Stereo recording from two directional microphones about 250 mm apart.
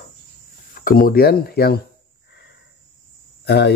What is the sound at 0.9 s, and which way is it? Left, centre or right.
Speech, left.